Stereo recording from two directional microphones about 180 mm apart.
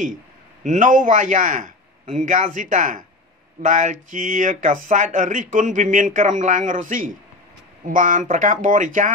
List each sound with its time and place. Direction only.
0.7 s speech: 45° right (ahead or behind)